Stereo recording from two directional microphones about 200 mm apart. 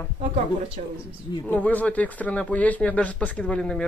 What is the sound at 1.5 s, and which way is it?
Speech, 10° left (ahead or behind).